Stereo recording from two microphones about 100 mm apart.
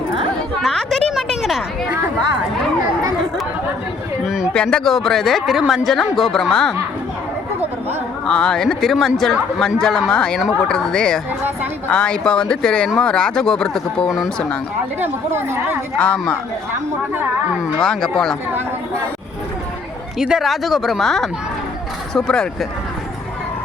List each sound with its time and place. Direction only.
0.6 s a sound: centre (ahead or behind)
4.5 s a man's voice: 10° left (ahead or behind)
8.3 s a man's voice: 10° left (ahead or behind)
15.0 s speech: 25° right (ahead or behind)
16.0 s speech: 10° left (ahead or behind)
17.7 s speech: 5° left (ahead or behind)
20.1 s a man's voice: 5° right (ahead or behind)